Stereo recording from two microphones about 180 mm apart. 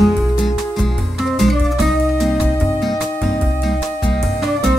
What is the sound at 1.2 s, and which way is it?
Music, centre (ahead or behind).